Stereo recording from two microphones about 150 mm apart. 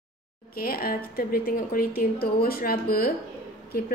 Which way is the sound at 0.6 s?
80° left.